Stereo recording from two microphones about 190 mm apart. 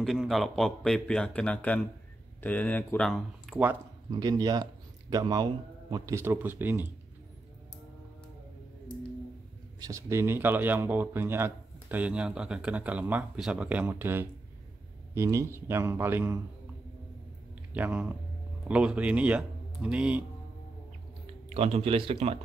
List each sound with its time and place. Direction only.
0.0 s speech: centre (ahead or behind)
4.1 s a man's voice: 20° right (ahead or behind)
9.8 s a man's voice: 15° right (ahead or behind)
17.7 s a man's voice: 10° right (ahead or behind)
21.5 s speech: 30° right (ahead or behind)